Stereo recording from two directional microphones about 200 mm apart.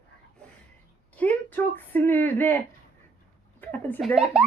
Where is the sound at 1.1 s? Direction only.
10° left (ahead or behind).